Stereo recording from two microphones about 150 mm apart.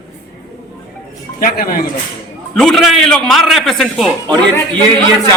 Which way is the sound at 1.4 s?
65° left (ahead or behind).